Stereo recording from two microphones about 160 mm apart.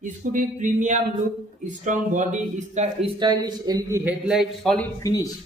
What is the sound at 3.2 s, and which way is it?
Speech, 25° right (ahead or behind).